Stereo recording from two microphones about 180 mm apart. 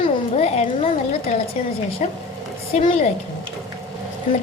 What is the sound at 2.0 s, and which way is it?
Speech, 35° left (ahead or behind).